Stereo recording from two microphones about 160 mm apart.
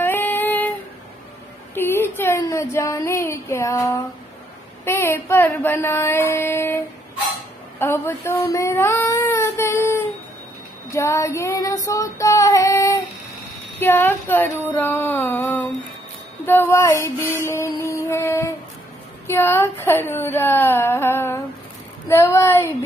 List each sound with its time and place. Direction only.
0.0 s female singing: 10° left (ahead or behind)
1.8 s a woman's voice: 15° left (ahead or behind)
7.8 s a woman's voice: 15° left (ahead or behind)
8.5 s child singing: 15° left (ahead or behind)
13.7 s a woman's voice: 15° left (ahead or behind)
14.8 s a sound: 10° left (ahead or behind)
19.2 s a woman's voice: 15° left (ahead or behind)